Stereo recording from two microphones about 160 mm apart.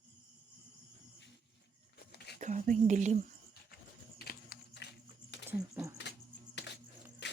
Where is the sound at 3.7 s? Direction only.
75° left (ahead or behind).